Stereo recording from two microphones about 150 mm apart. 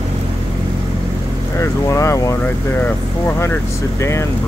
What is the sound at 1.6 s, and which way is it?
Speech, 20° left (ahead or behind).